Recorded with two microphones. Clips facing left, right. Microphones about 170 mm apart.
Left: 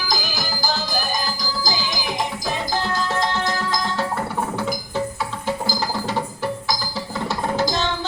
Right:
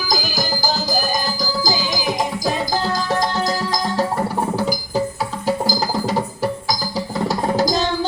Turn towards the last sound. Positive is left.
turn(degrees=-40)  # may be behind; listen again after turning